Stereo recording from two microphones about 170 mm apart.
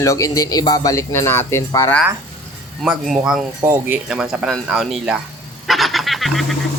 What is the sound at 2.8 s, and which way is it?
Speech, 5° right (ahead or behind).